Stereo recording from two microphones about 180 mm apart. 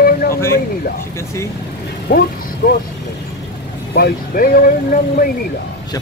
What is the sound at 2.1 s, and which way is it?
Speech, 55° left (ahead or behind).